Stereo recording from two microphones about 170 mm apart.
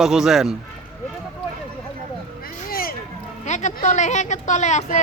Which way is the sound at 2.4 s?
60° left (ahead or behind).